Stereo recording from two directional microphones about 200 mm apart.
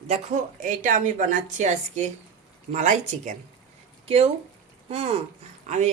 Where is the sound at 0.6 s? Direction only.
40° right (ahead or behind).